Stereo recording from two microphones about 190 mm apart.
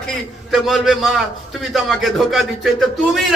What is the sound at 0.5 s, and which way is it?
Speech, centre (ahead or behind).